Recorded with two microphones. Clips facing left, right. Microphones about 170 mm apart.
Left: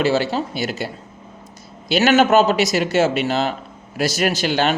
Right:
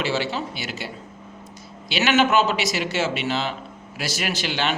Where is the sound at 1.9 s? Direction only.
40° left (ahead or behind).